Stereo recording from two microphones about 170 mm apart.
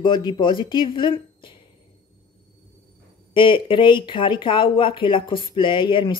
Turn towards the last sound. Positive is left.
turn(degrees=30)  # may be behind; listen again after turning